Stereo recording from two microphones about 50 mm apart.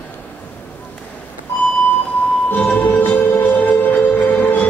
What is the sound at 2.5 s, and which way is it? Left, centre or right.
Music, left.